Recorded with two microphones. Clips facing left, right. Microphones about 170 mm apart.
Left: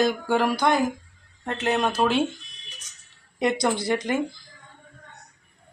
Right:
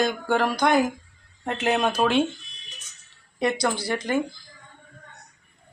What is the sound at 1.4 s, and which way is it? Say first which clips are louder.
Speech: right 1 dB; 10° right (ahead or behind).